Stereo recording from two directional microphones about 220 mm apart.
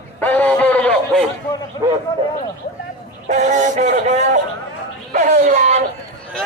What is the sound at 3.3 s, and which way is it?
Music, 30° right (ahead or behind).